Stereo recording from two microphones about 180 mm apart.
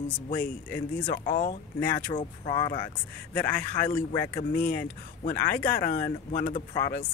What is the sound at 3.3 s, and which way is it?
A man's voice, 10° left (ahead or behind).